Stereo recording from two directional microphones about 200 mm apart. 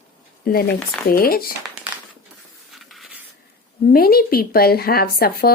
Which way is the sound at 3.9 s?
50° left (ahead or behind).